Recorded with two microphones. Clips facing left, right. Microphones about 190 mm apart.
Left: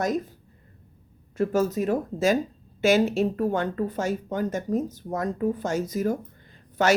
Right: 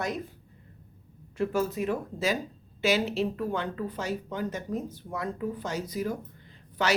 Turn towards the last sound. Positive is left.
turn(degrees=45)  # may be behind; listen again after turning